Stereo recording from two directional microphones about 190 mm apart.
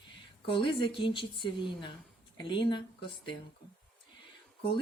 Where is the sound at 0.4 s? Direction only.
25° left (ahead or behind).